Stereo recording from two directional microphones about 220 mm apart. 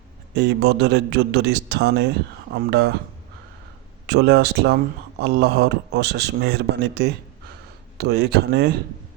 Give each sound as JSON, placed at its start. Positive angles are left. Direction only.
{"t": 0.3, "sound": "speech", "side_deg": -50}
{"t": 4.0, "sound": "speech", "side_deg": -50}